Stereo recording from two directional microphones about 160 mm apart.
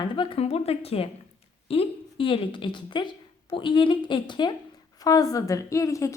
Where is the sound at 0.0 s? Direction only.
35° left (ahead or behind).